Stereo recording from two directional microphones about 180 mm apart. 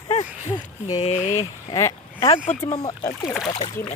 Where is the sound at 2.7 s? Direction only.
20° left (ahead or behind).